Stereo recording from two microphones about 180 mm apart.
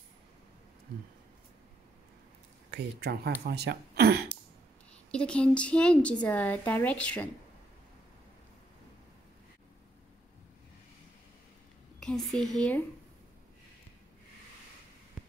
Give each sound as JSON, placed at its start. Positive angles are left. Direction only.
{"t": 2.7, "sound": "speech", "side_deg": -65}
{"t": 5.1, "sound": "a woman's voice", "side_deg": 5}
{"t": 12.0, "sound": "speech", "side_deg": 0}